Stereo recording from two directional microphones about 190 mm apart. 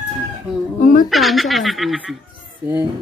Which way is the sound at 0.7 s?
45° left (ahead or behind).